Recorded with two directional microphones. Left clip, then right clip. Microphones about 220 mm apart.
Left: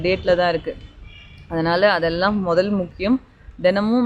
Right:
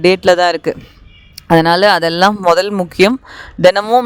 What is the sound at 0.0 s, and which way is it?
Speech, 55° right (ahead or behind).